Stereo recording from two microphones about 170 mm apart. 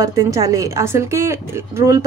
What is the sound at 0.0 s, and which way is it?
A woman's voice, 20° right (ahead or behind).